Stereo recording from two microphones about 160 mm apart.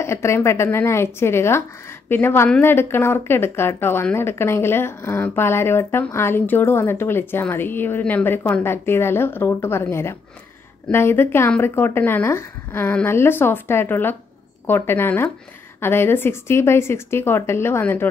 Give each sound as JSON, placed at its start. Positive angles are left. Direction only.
{"t": 0.0, "sound": "speech", "side_deg": 15}